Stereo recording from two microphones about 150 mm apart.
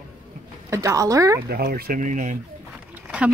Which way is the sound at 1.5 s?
90° right.